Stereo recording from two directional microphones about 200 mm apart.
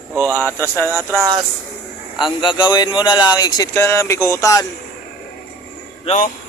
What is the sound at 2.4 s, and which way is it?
Speech, 25° left (ahead or behind).